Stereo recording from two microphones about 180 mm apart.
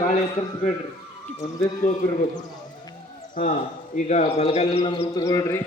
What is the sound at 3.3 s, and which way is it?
A man's voice, 50° left (ahead or behind).